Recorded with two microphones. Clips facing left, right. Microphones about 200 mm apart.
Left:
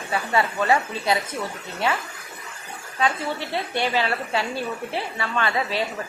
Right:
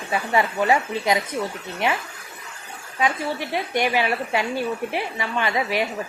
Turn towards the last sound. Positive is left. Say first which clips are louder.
# right 1 dB
turn(degrees=-15)  # may be behind; listen again after turning